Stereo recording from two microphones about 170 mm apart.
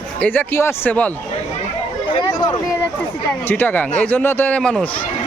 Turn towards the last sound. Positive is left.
turn(degrees=5)  # may be behind; listen again after turning